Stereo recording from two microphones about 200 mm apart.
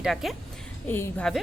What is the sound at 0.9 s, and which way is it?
Speech, 10° left (ahead or behind).